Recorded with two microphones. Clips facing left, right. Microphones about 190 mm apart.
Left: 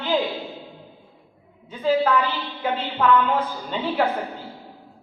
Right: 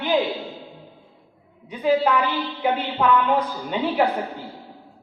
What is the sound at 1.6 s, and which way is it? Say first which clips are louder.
Speech: right 2 dB; 15° right (ahead or behind).